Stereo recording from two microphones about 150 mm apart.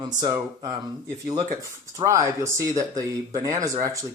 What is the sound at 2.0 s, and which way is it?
Speech, 20° right (ahead or behind).